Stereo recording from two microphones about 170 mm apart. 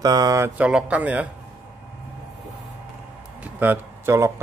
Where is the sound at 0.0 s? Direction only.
20° right (ahead or behind).